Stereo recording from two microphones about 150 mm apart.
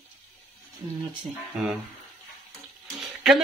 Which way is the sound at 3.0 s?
Centre (ahead or behind).